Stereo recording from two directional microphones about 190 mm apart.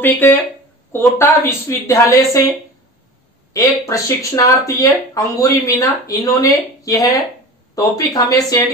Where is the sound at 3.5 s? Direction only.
15° left (ahead or behind).